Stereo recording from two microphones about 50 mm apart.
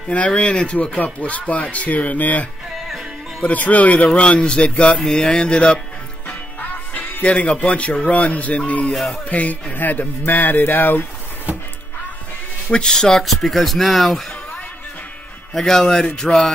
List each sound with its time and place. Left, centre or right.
0.1 s speech: left
3.4 s speech: left
6.9 s music: left
7.6 s speech: left
12.7 s speech: centre
15.5 s speech: centre